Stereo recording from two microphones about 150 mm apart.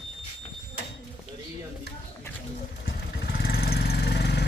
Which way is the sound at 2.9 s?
90° left.